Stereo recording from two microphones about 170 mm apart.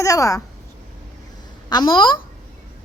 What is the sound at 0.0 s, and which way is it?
Speech, 20° left (ahead or behind).